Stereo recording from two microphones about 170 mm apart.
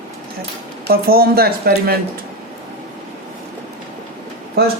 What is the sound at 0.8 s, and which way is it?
Speech, 60° right (ahead or behind).